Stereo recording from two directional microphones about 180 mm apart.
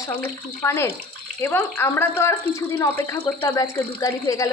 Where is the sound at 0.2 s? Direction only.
15° left (ahead or behind).